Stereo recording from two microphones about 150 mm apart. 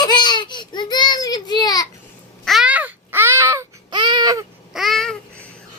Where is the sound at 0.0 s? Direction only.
30° left (ahead or behind).